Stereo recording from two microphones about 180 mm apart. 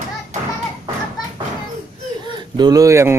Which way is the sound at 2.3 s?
25° right (ahead or behind).